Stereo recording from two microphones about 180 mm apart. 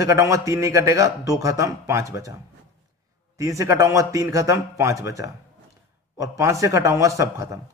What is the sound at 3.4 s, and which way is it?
A man's voice, 15° right (ahead or behind).